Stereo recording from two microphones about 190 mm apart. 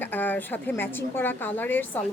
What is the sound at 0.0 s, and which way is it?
A woman's voice, 10° left (ahead or behind).